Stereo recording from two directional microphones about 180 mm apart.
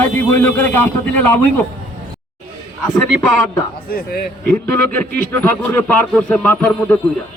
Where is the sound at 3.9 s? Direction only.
60° left (ahead or behind).